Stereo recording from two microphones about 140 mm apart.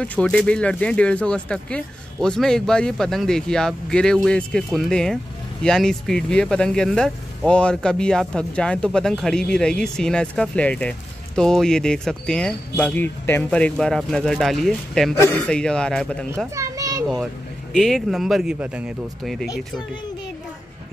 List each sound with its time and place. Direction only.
0.0 s speech: 10° left (ahead or behind)
15.1 s speech: 15° left (ahead or behind)
15.4 s speech: 5° left (ahead or behind)
16.5 s children playing: 25° right (ahead or behind)
17.7 s speech: centre (ahead or behind)